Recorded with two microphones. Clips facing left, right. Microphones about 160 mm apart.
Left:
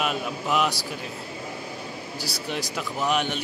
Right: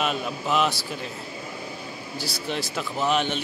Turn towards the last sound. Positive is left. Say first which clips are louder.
# right 1 dB
turn(degrees=10)  # may be behind; listen again after turning